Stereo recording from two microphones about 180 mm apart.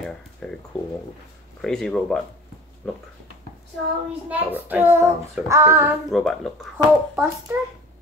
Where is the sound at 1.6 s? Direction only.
Centre (ahead or behind).